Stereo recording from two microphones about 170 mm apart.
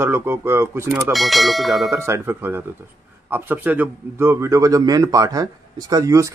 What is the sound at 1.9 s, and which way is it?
A man's voice, 15° right (ahead or behind).